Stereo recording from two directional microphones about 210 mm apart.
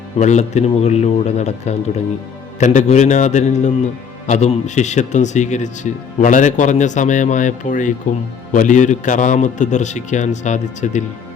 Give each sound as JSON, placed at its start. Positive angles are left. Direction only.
{"t": 0.2, "sound": "speech", "side_deg": 35}